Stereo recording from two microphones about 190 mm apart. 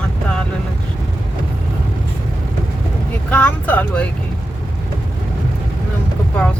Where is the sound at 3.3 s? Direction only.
10° left (ahead or behind).